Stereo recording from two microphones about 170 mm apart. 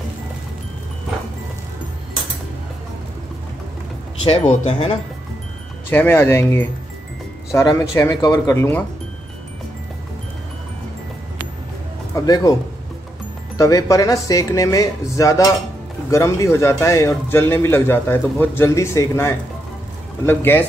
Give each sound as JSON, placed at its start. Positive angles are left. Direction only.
{"t": 4.5, "sound": "speech", "side_deg": 35}
{"t": 5.9, "sound": "speech", "side_deg": 10}
{"t": 12.1, "sound": "speech", "side_deg": 20}
{"t": 13.6, "sound": "speech", "side_deg": 20}